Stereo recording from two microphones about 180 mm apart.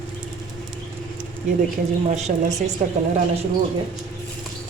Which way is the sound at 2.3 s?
45° right (ahead or behind).